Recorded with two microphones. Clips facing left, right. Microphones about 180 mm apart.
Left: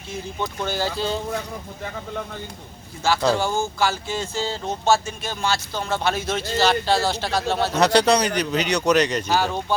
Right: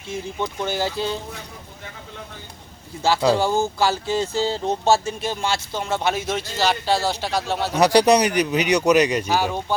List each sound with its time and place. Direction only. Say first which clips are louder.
0.3 s speech: right 1 dB; 20° right (ahead or behind)
3.3 s speech: right 3 dB; 35° right (ahead or behind); by 9.7 s 10° right (ahead or behind)